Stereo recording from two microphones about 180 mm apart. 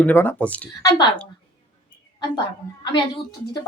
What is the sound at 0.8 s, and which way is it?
Speech, 20° left (ahead or behind).